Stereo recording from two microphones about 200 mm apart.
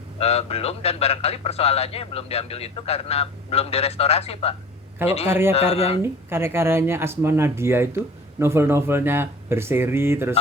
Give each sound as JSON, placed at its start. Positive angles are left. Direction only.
{"t": 0.2, "sound": "a man's voice", "side_deg": 30}
{"t": 6.0, "sound": "speech", "side_deg": -10}